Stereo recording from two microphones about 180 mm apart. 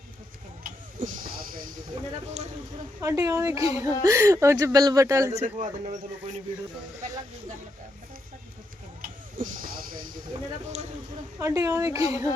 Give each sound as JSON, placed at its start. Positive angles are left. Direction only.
{"t": 0.9, "sound": "speech", "side_deg": -50}
{"t": 3.0, "sound": "speech", "side_deg": -15}
{"t": 5.4, "sound": "speech", "side_deg": -40}
{"t": 9.0, "sound": "a sound", "side_deg": -50}
{"t": 11.3, "sound": "speech", "side_deg": -15}